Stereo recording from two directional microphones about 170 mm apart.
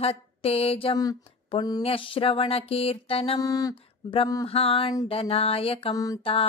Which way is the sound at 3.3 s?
20° left (ahead or behind).